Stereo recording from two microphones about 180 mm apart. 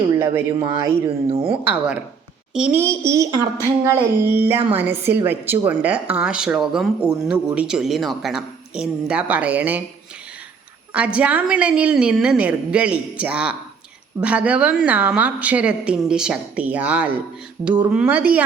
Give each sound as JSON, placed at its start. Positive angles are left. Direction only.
{"t": 1.0, "sound": "speech", "side_deg": -30}
{"t": 1.6, "sound": "speech", "side_deg": -5}
{"t": 10.9, "sound": "speech", "side_deg": -5}